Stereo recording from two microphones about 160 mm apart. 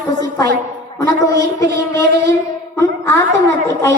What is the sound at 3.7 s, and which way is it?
Music, 20° left (ahead or behind).